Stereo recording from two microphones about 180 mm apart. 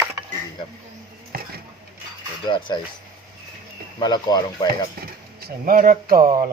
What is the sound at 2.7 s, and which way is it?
Speech, 20° left (ahead or behind).